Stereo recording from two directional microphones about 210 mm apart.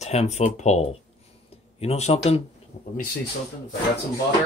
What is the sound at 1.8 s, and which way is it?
Speech, 30° left (ahead or behind).